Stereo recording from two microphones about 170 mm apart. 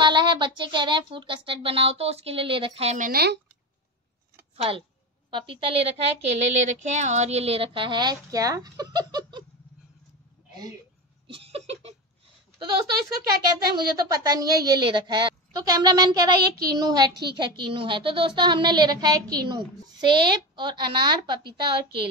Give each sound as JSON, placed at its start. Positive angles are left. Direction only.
{"t": 0.0, "sound": "speech", "side_deg": -25}
{"t": 3.1, "sound": "speech", "side_deg": -65}
{"t": 4.6, "sound": "speech", "side_deg": -35}
{"t": 11.2, "sound": "a sound", "side_deg": -35}
{"t": 13.7, "sound": "speech", "side_deg": -20}